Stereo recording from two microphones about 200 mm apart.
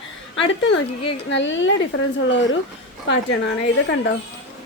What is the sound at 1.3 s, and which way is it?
A woman's voice, 70° left (ahead or behind).